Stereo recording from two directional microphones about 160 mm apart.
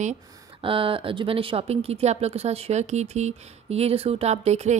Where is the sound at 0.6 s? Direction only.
35° right (ahead or behind).